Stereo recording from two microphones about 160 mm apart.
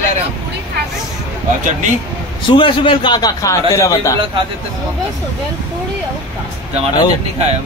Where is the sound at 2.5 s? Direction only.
30° left (ahead or behind).